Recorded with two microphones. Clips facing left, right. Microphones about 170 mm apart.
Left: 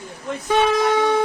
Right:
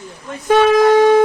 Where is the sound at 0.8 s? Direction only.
50° right (ahead or behind).